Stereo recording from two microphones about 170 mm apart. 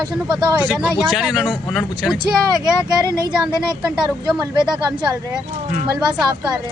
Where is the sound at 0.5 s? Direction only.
10° right (ahead or behind).